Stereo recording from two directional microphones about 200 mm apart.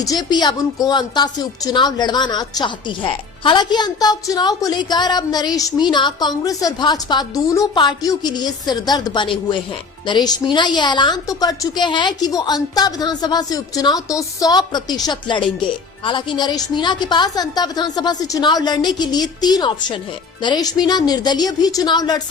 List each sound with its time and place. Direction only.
0.0 s a woman's voice: 20° left (ahead or behind)